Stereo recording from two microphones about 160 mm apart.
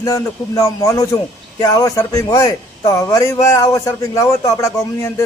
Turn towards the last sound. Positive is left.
turn(degrees=20)  # may be behind; listen again after turning